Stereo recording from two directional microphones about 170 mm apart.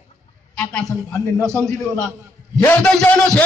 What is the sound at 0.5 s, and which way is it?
A man's voice, 10° left (ahead or behind).